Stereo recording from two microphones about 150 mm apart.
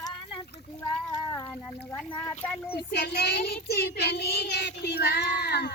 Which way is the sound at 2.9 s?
90° left.